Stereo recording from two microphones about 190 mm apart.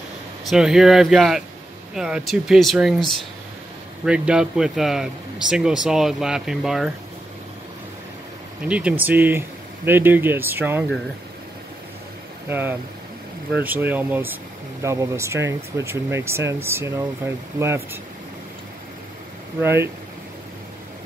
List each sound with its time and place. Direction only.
0.5 s speech: 5° right (ahead or behind)
4.0 s speech: 5° right (ahead or behind)
8.6 s speech: 5° right (ahead or behind)
12.4 s speech: 10° right (ahead or behind)
19.6 s speech: 10° right (ahead or behind)